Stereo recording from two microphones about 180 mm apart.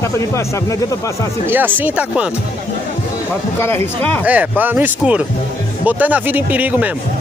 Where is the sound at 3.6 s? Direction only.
15° left (ahead or behind).